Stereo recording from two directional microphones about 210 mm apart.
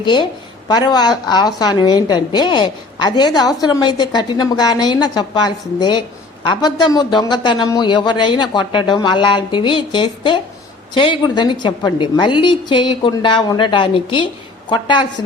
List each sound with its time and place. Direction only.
0.0 s a woman's voice: 20° left (ahead or behind)